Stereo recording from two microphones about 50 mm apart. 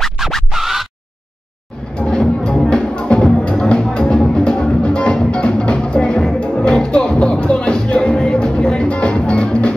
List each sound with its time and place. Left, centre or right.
0.5 s scratch: centre
2.0 s music: centre